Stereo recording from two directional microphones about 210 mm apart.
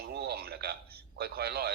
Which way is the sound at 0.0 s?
50° right (ahead or behind).